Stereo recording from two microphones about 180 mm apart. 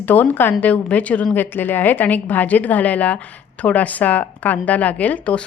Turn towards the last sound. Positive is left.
turn(degrees=10)  # may be behind; listen again after turning